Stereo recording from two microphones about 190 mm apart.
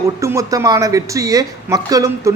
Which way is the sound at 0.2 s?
15° right (ahead or behind).